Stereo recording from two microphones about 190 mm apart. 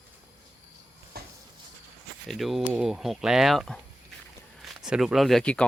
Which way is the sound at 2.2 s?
Centre (ahead or behind).